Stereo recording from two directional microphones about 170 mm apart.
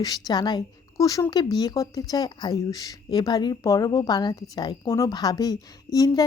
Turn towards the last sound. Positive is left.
turn(degrees=20)  # may be behind; listen again after turning